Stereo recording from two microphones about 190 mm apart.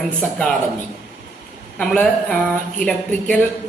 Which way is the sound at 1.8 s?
5° left (ahead or behind).